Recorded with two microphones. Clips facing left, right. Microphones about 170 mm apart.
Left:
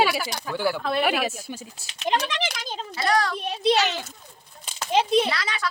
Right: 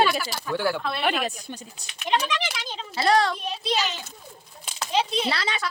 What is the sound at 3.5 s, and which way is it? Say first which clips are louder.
Speech: left 5 dB; 60° left (ahead or behind).